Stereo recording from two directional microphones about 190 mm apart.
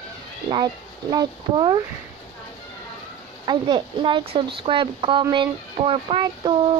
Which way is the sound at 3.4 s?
25° right (ahead or behind).